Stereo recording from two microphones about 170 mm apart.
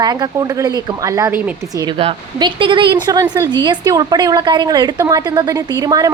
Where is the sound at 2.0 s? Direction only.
30° right (ahead or behind).